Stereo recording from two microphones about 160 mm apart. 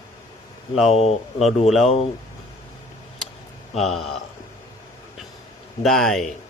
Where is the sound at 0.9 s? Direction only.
40° left (ahead or behind).